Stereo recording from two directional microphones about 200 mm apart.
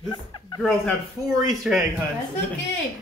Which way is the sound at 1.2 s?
Centre (ahead or behind).